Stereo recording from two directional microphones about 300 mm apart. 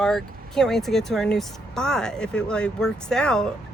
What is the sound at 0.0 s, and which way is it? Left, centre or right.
Speech, centre.